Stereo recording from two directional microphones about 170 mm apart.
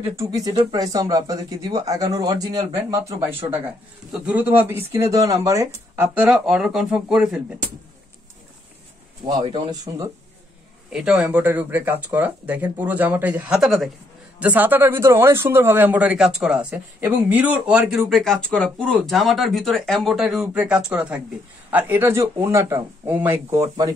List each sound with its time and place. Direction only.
0.1 s speech: 20° right (ahead or behind)
9.4 s speech: 30° right (ahead or behind)
10.9 s speech: 5° right (ahead or behind)